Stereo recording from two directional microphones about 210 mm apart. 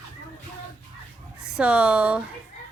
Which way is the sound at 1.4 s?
5° right (ahead or behind).